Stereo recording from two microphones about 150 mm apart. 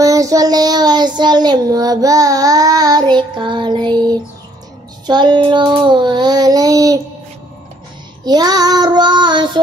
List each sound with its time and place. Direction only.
0.0 s child singing: 25° right (ahead or behind)
5.0 s child singing: 30° right (ahead or behind)
8.3 s child singing: 25° right (ahead or behind)